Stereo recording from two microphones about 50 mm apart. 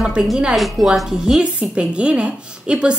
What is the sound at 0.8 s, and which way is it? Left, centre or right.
A woman's voice, centre.